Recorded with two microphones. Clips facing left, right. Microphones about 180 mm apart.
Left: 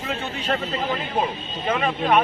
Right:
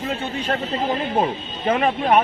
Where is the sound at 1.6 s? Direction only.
40° right (ahead or behind).